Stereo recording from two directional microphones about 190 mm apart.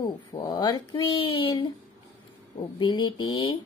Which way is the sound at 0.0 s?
20° left (ahead or behind).